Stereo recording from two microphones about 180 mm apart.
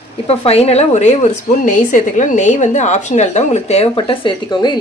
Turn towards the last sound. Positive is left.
turn(degrees=25)  # may be behind; listen again after turning